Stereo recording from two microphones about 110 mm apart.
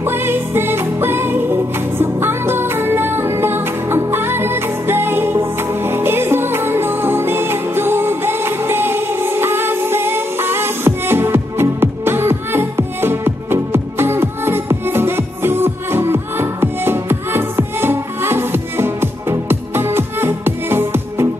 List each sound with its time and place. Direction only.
0.0 s music: 20° right (ahead or behind)